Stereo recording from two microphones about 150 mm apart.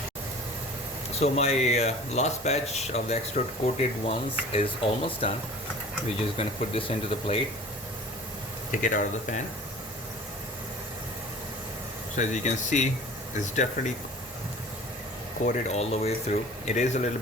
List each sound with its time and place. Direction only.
1.2 s speech: 45° left (ahead or behind)
6.3 s speech: 40° left (ahead or behind)
8.8 s speech: 60° left (ahead or behind)
12.1 s speech: 55° left (ahead or behind)
15.4 s speech: 50° left (ahead or behind)